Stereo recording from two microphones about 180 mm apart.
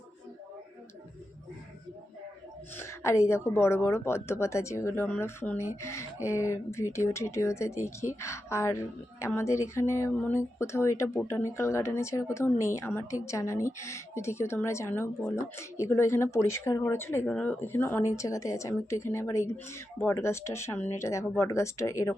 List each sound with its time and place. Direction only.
2.7 s a woman's voice: 15° left (ahead or behind)